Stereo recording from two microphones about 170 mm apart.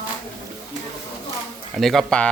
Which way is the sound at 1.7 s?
Centre (ahead or behind).